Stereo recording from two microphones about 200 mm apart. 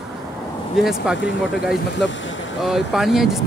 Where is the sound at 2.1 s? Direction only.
70° left (ahead or behind).